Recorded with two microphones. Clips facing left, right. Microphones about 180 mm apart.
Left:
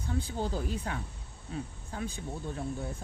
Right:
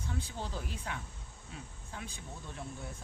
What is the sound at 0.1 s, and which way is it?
Speech, 40° left (ahead or behind).